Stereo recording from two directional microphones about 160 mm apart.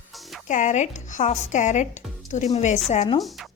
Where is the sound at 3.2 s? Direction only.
Centre (ahead or behind).